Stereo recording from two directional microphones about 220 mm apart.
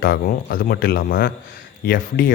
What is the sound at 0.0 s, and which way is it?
Speech, 45° left (ahead or behind).